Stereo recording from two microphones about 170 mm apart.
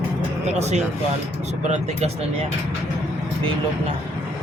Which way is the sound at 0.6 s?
40° right (ahead or behind).